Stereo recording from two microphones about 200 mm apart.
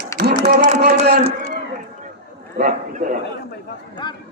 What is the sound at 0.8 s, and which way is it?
Speech, 50° right (ahead or behind).